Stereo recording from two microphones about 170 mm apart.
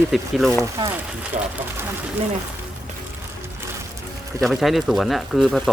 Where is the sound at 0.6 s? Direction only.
20° right (ahead or behind).